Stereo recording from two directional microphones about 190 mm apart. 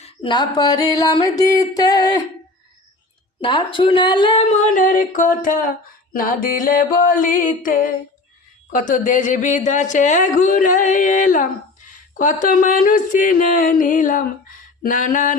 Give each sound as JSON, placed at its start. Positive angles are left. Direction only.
{"t": 0.0, "sound": "music", "side_deg": 25}
{"t": 3.4, "sound": "music", "side_deg": 25}
{"t": 4.6, "sound": "speech", "side_deg": 45}